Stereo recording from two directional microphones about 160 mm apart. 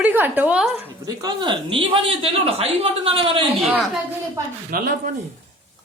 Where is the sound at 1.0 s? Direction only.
25° right (ahead or behind).